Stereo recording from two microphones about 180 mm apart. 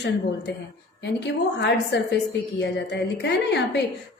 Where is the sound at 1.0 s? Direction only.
70° left (ahead or behind).